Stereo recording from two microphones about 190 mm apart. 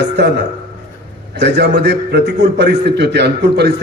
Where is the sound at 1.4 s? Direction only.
65° right (ahead or behind).